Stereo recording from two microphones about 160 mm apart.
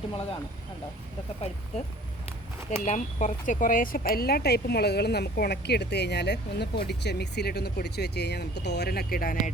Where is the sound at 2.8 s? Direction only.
50° left (ahead or behind).